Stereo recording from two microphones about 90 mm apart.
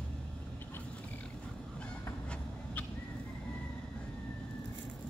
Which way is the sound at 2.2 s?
10° left (ahead or behind).